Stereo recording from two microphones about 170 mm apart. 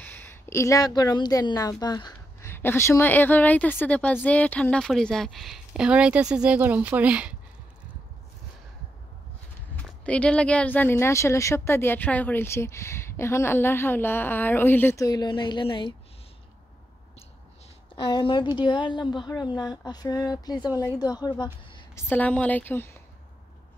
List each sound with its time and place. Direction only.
0.0 s a woman's voice: 15° left (ahead or behind); by 7.3 s 5° right (ahead or behind)
9.8 s a woman's voice: 5° left (ahead or behind)
15.0 s speech: 25° left (ahead or behind)
17.9 s speech: 30° left (ahead or behind)
21.9 s a woman's voice: 10° left (ahead or behind)